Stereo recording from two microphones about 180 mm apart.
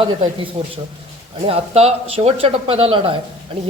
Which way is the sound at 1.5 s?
35° right (ahead or behind).